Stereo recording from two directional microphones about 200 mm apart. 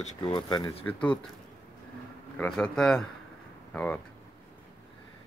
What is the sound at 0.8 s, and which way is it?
Speech, 5° left (ahead or behind).